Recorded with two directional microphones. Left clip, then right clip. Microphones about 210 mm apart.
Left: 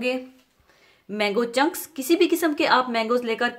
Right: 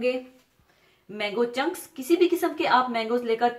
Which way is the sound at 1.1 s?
50° left (ahead or behind).